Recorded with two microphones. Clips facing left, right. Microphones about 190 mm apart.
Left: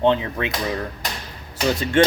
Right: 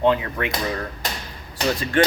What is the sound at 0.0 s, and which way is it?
Speech, 25° left (ahead or behind).